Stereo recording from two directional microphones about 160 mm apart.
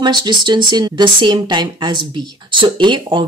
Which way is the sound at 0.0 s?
25° right (ahead or behind).